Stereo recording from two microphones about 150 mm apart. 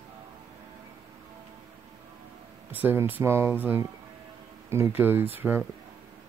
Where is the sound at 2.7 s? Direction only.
15° right (ahead or behind).